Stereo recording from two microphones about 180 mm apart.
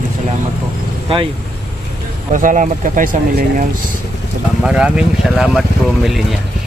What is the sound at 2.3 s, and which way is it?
Speech, 45° right (ahead or behind).